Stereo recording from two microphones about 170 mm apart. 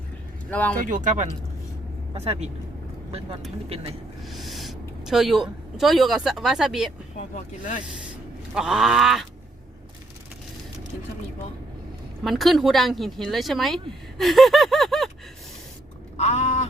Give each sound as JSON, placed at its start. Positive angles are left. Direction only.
{"t": 0.5, "sound": "speech", "side_deg": 10}
{"t": 0.8, "sound": "speech", "side_deg": -50}
{"t": 4.3, "sound": "speech", "side_deg": 0}
{"t": 7.3, "sound": "speech", "side_deg": 50}
{"t": 8.5, "sound": "speech", "side_deg": -5}
{"t": 12.2, "sound": "speech", "side_deg": 0}
{"t": 14.2, "sound": "a sound", "side_deg": 0}
{"t": 16.1, "sound": "a sound", "side_deg": 40}